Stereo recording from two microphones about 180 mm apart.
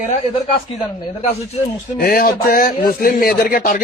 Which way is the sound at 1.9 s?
55° left (ahead or behind).